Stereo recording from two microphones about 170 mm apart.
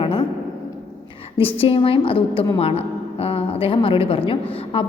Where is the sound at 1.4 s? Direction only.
35° left (ahead or behind).